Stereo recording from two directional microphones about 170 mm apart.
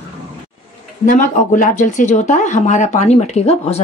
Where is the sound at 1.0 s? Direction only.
50° left (ahead or behind).